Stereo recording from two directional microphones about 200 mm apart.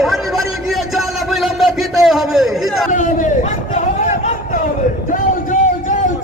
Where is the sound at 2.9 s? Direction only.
40° left (ahead or behind).